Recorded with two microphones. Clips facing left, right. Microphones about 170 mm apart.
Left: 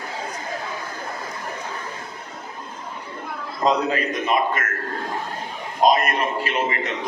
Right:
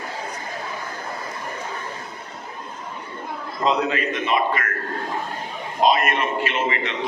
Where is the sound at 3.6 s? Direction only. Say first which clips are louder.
Left 1 dB; 40° left (ahead or behind).